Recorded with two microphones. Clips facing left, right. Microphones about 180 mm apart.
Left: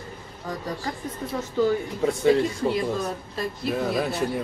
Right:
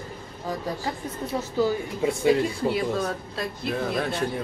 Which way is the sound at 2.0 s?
10° right (ahead or behind).